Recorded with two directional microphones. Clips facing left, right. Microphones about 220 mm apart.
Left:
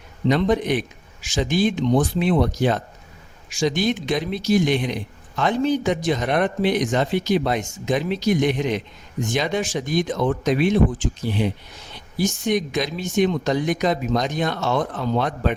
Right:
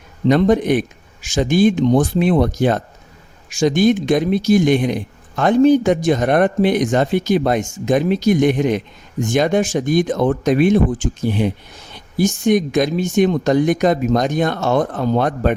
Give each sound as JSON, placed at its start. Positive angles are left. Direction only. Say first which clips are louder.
{"t": 0.3, "sound": "a man's voice", "louder": "right 6 dB", "side_deg": -50}